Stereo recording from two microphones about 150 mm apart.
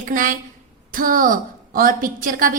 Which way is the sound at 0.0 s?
65° right (ahead or behind).